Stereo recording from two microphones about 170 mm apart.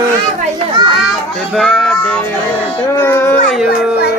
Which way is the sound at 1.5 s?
5° left (ahead or behind).